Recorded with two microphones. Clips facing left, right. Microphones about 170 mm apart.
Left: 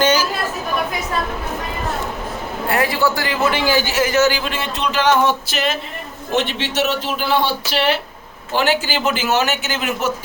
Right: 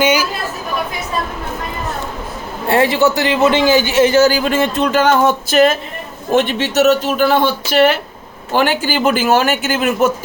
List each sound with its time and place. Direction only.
0.0 s chatter: 10° right (ahead or behind)
2.6 s a man's voice: 25° right (ahead or behind); by 10.1 s 50° right (ahead or behind)